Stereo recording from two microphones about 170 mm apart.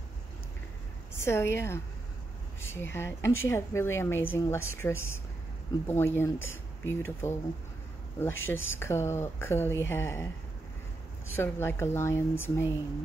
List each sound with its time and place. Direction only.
1.1 s a woman's voice: 15° left (ahead or behind)
11.3 s a woman's voice: 15° left (ahead or behind)